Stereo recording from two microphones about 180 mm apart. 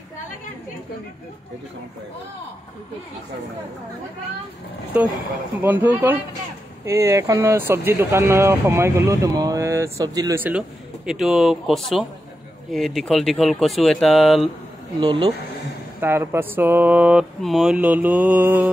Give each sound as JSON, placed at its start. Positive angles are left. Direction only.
{"t": 4.9, "sound": "speech", "side_deg": -10}
{"t": 11.1, "sound": "speech", "side_deg": 0}
{"t": 15.0, "sound": "speech", "side_deg": -25}
{"t": 16.0, "sound": "speech", "side_deg": -15}